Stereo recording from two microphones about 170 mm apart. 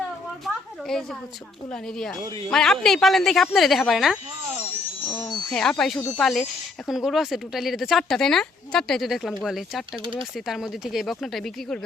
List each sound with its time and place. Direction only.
0.4 s a sound: centre (ahead or behind)
1.7 s speech: 5° left (ahead or behind)
5.1 s speech: 25° left (ahead or behind)
5.5 s speech: 5° left (ahead or behind)